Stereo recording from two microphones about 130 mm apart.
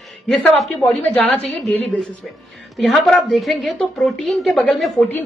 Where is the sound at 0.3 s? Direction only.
5° left (ahead or behind).